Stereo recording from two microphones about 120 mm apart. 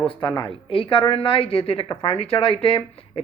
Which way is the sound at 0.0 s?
40° left (ahead or behind).